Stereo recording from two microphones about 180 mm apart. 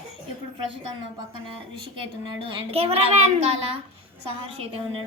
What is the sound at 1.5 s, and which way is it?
A woman's voice, 30° right (ahead or behind).